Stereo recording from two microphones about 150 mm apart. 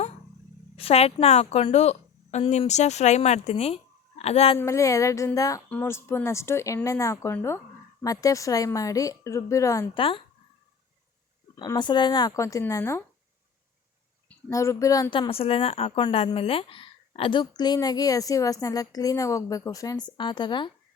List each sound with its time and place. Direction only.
0.8 s a woman's voice: 40° left (ahead or behind)
4.5 s a woman's voice: 20° left (ahead or behind)
9.9 s speech: 35° left (ahead or behind)
11.6 s a woman's voice: 30° left (ahead or behind)
14.5 s a woman's voice: 20° left (ahead or behind)
15.1 s a woman's voice: 35° left (ahead or behind)